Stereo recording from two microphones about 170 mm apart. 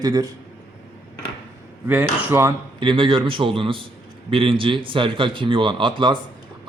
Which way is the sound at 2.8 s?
30° right (ahead or behind).